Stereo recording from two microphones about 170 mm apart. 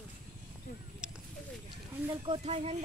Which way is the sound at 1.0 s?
5° right (ahead or behind).